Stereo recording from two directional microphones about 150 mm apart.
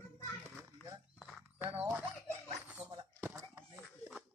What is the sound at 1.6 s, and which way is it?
Speech, 10° right (ahead or behind).